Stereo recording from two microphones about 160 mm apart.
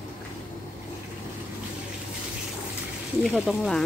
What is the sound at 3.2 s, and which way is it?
Speech, 5° right (ahead or behind).